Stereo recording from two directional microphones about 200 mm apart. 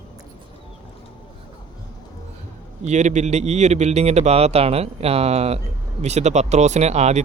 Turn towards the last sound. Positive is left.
turn(degrees=-35)  # may be behind; listen again after turning